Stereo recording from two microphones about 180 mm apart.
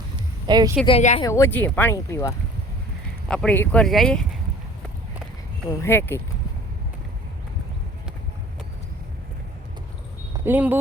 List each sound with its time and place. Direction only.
0.4 s a woman's voice: 20° right (ahead or behind)
0.9 s speech: 35° left (ahead or behind)
1.2 s speech: 15° left (ahead or behind)
3.2 s speech: 5° left (ahead or behind)
5.8 s speech: 10° left (ahead or behind)
10.3 s speech: 10° right (ahead or behind)